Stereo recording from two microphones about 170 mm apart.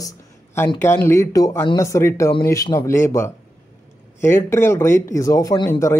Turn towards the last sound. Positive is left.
turn(degrees=15)  # may be behind; listen again after turning